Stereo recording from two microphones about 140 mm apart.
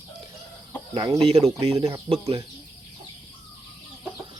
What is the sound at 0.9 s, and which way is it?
Speech, 35° right (ahead or behind).